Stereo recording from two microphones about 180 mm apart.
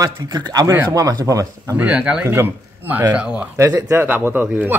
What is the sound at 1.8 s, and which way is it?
A man's voice, 5° right (ahead or behind).